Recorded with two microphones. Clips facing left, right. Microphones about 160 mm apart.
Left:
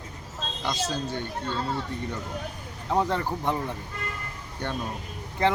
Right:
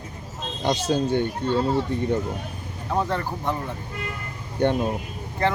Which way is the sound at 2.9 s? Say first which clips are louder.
Even; 15° left (ahead or behind).